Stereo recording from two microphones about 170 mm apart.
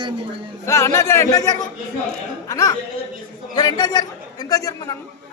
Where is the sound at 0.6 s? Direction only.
15° left (ahead or behind).